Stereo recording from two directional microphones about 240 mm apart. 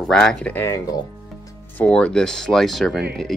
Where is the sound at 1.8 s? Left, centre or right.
Centre.